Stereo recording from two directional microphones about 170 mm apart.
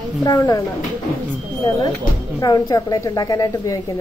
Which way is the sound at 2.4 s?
25° left (ahead or behind).